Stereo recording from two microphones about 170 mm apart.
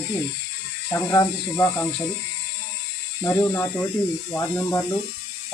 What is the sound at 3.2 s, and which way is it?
Speech, 15° left (ahead or behind).